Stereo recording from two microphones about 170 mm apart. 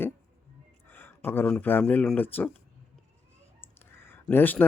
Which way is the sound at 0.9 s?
10° left (ahead or behind).